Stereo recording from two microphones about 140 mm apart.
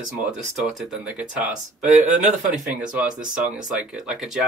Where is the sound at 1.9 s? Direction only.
60° right (ahead or behind).